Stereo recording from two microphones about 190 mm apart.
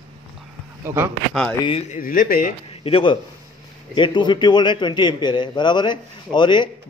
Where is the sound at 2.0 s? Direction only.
45° left (ahead or behind).